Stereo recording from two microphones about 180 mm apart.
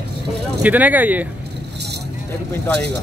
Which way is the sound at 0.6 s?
10° right (ahead or behind).